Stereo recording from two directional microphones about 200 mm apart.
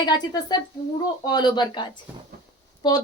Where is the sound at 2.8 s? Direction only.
20° left (ahead or behind).